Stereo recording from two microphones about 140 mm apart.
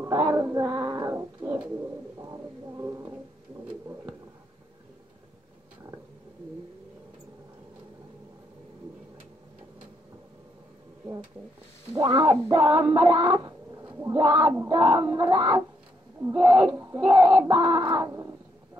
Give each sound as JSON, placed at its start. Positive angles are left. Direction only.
{"t": 0.0, "sound": "a sound", "side_deg": -25}
{"t": 11.9, "sound": "music", "side_deg": -30}
{"t": 14.1, "sound": "speech", "side_deg": -30}